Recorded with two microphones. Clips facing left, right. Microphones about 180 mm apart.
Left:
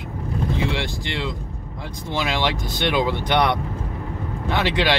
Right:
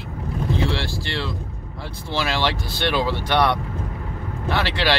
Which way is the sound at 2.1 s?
15° left (ahead or behind).